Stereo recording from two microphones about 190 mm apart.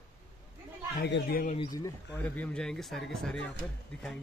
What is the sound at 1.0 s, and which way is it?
Speech, 55° left (ahead or behind).